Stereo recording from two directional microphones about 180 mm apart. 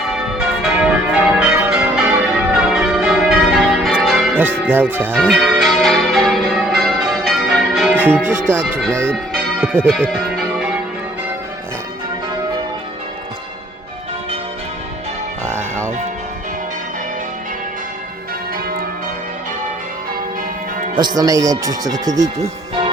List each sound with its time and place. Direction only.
0.1 s church bell: centre (ahead or behind)
4.6 s speech: 10° right (ahead or behind)
5.2 s change ringing: centre (ahead or behind)
9.0 s speech: 5° left (ahead or behind)
21.0 s speech: 20° right (ahead or behind)